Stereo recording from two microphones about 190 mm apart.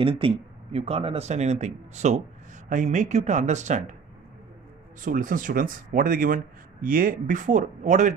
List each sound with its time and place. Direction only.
0.0 s speech: 30° right (ahead or behind)
5.0 s speech: 45° right (ahead or behind)